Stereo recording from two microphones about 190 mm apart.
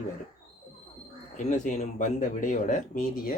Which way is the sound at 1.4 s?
40° left (ahead or behind).